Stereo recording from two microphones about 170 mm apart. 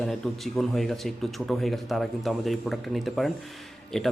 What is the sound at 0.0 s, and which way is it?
Speech, centre (ahead or behind).